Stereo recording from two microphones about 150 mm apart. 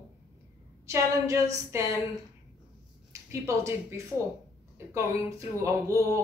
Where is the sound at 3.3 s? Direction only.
20° right (ahead or behind).